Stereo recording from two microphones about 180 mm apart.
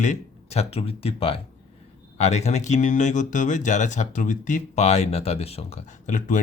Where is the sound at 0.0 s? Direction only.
40° left (ahead or behind).